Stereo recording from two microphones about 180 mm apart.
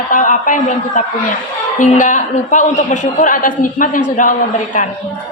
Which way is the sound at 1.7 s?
45° left (ahead or behind).